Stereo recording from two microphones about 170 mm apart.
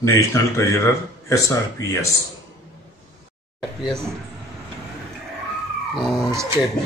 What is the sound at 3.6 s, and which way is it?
Speech, centre (ahead or behind).